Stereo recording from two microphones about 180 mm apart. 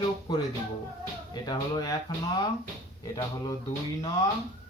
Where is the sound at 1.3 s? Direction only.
25° left (ahead or behind).